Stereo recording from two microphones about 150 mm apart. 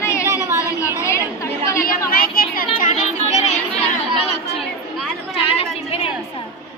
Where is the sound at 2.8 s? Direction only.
55° left (ahead or behind).